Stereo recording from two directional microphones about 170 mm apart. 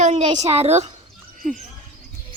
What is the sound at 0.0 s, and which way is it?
Speech, 40° right (ahead or behind).